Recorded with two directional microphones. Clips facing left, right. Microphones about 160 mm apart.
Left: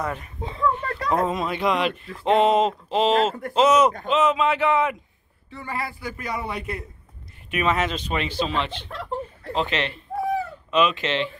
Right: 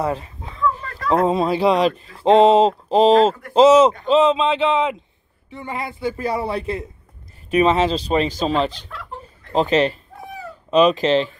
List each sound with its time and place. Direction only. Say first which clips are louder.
0.0 s speech: right 6 dB; 30° right (ahead or behind)
0.4 s a sound: left 3 dB; 30° left (ahead or behind)
0.9 s speech: right 5 dB; 35° right (ahead or behind)
8.8 s chuckle: left 5 dB; 35° left (ahead or behind)
9.5 s speech: right 9 dB; 40° right (ahead or behind)